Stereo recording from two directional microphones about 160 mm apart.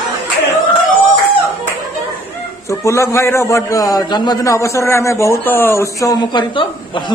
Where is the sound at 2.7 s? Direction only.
20° left (ahead or behind).